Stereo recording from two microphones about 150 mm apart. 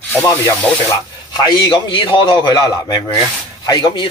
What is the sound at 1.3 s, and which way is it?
A man's voice, 30° left (ahead or behind).